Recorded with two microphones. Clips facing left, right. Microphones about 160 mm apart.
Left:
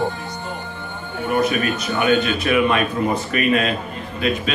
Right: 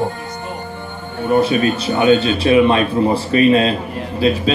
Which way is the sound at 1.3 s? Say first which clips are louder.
Right 5 dB; 30° right (ahead or behind).